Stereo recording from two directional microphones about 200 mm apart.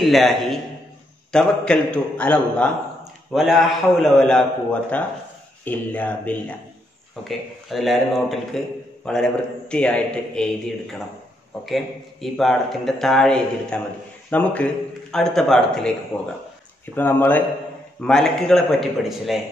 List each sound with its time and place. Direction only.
0.0 s a man's voice: centre (ahead or behind)
16.9 s a man's voice: 10° left (ahead or behind)